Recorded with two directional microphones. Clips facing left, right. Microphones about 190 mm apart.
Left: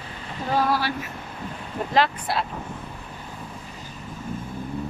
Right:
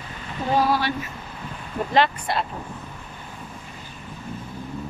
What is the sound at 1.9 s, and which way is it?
Speech, centre (ahead or behind).